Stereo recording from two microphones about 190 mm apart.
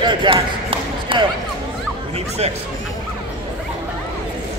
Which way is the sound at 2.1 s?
35° right (ahead or behind).